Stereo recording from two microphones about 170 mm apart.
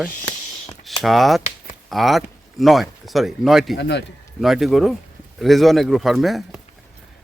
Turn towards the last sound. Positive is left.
turn(degrees=0)  # may be behind; listen again after turning